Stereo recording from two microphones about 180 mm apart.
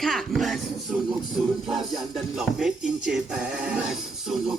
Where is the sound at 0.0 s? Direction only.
Centre (ahead or behind).